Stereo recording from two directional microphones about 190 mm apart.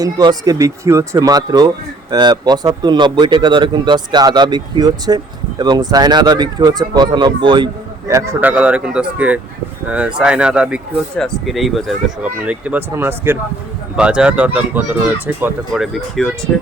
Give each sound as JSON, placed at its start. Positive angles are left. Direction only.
{"t": 0.0, "sound": "speech", "side_deg": -20}
{"t": 15.7, "sound": "speech", "side_deg": 0}